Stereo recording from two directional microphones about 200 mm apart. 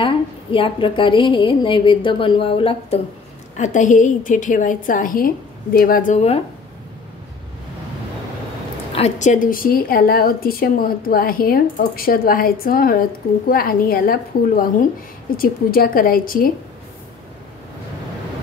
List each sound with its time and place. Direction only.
0.0 s a woman's voice: 25° left (ahead or behind)
3.5 s a woman's voice: 40° left (ahead or behind)
8.9 s a woman's voice: 35° left (ahead or behind)